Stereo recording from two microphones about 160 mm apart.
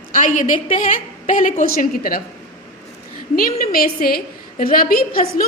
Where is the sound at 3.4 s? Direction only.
65° left (ahead or behind).